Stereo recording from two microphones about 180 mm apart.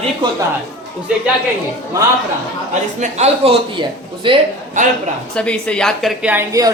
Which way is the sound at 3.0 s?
35° right (ahead or behind).